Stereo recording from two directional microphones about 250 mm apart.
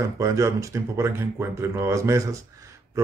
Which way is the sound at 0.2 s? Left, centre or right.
Centre.